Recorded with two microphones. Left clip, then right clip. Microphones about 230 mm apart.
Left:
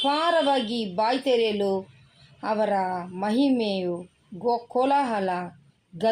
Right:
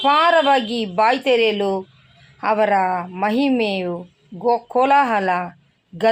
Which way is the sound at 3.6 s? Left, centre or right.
Right.